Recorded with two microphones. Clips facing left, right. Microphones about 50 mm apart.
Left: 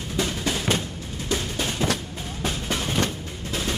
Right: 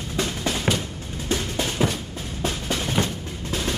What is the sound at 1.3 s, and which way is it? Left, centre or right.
Music, right.